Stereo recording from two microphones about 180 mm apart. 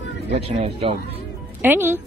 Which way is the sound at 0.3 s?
40° right (ahead or behind).